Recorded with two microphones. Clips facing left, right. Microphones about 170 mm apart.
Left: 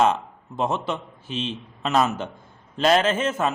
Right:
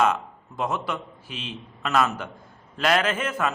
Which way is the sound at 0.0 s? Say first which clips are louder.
Left 2 dB; 25° left (ahead or behind).